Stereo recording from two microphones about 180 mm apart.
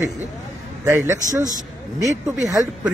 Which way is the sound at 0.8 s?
15° right (ahead or behind).